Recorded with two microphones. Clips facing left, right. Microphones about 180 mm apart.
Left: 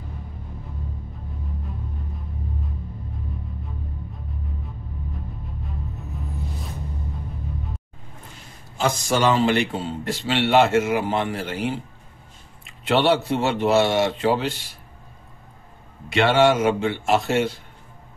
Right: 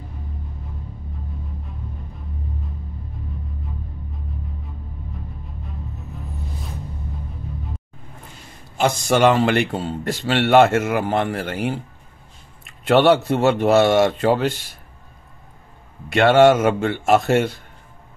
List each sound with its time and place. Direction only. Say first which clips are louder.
8.7 s speech: right 4 dB; 65° right (ahead or behind)
16.1 s speech: right 5 dB; 50° right (ahead or behind)